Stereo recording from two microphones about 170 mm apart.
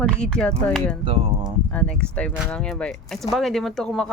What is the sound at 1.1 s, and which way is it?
Speech, 30° right (ahead or behind).